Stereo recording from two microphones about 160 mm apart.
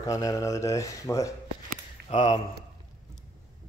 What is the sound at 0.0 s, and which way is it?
Speech, 20° left (ahead or behind).